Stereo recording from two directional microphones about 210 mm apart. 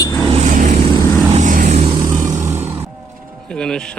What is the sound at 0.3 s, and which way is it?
Vehicle, 35° right (ahead or behind).